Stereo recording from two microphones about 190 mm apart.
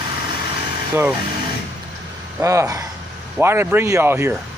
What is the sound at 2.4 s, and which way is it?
Speech, 15° right (ahead or behind).